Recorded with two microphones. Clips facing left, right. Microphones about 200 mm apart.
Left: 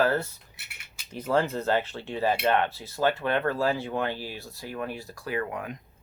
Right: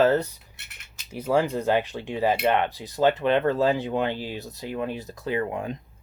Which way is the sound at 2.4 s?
15° right (ahead or behind).